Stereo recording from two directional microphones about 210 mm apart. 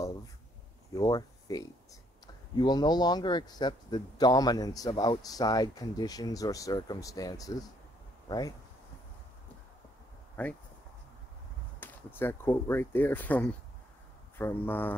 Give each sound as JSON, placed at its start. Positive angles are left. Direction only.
{"t": 0.9, "sound": "a man's voice", "side_deg": 20}
{"t": 10.4, "sound": "a man's voice", "side_deg": 10}
{"t": 11.8, "sound": "a man's voice", "side_deg": 10}